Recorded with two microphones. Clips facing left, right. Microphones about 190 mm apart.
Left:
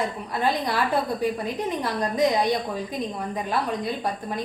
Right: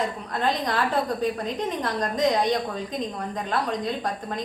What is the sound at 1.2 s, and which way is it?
A woman's voice, 10° left (ahead or behind).